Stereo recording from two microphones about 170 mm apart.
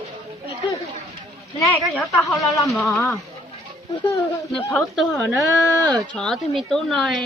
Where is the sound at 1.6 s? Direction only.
20° left (ahead or behind).